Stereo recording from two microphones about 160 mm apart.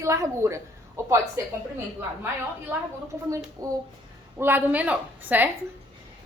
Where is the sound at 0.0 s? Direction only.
20° right (ahead or behind).